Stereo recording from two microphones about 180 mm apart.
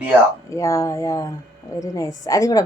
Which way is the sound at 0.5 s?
15° left (ahead or behind).